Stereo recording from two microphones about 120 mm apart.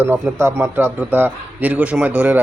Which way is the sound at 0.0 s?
20° right (ahead or behind).